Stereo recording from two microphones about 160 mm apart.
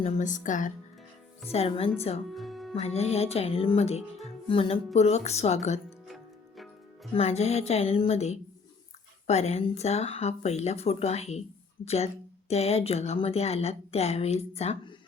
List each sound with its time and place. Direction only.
0.0 s speech: 50° left (ahead or behind)
1.5 s speech: 40° left (ahead or behind)
2.3 s music: centre (ahead or behind)
2.7 s speech: 40° left (ahead or behind)
7.2 s speech: 40° left (ahead or behind)